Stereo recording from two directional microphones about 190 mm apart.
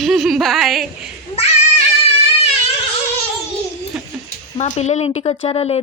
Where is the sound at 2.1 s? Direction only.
30° left (ahead or behind).